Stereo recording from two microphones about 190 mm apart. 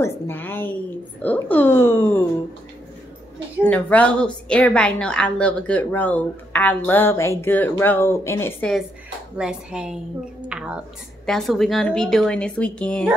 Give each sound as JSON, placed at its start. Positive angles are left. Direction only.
{"t": 0.0, "sound": "a woman's voice", "side_deg": 10}
{"t": 3.6, "sound": "a woman's voice", "side_deg": 10}
{"t": 9.4, "sound": "a woman's voice", "side_deg": -5}
{"t": 10.5, "sound": "a sound", "side_deg": -5}
{"t": 11.2, "sound": "a woman's voice", "side_deg": 0}